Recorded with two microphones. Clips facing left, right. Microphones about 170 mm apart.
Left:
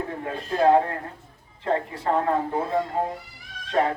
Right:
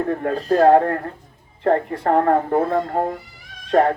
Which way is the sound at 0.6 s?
55° right (ahead or behind).